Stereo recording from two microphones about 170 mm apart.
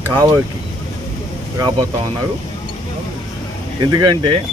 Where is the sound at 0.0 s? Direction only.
20° right (ahead or behind).